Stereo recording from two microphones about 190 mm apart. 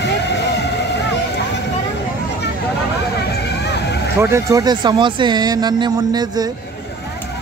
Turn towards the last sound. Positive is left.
turn(degrees=-20)  # may be behind; listen again after turning